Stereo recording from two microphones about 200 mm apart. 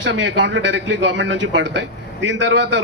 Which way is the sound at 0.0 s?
65° right (ahead or behind).